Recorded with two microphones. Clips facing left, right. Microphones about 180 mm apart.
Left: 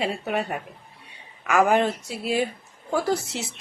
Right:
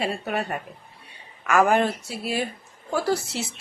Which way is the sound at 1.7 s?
15° left (ahead or behind).